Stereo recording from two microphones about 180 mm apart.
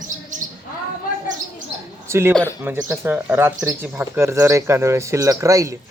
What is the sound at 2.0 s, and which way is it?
Speech, 15° right (ahead or behind).